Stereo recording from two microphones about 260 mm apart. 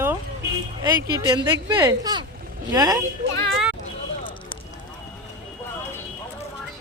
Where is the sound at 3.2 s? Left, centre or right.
Right.